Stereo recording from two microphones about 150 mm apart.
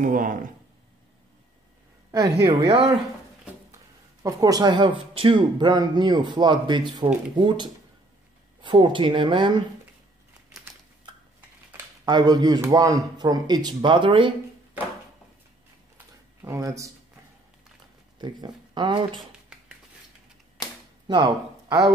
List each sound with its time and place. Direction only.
0.0 s speech: 65° right (ahead or behind)
2.0 s a sound: 25° right (ahead or behind)
2.4 s speech: 30° right (ahead or behind)
4.2 s speech: 25° right (ahead or behind)
11.7 s speech: 25° right (ahead or behind)
16.4 s speech: 20° right (ahead or behind)
18.2 s speech: 30° right (ahead or behind)
19.1 s a sound: 5° right (ahead or behind)
21.1 s speech: 25° right (ahead or behind)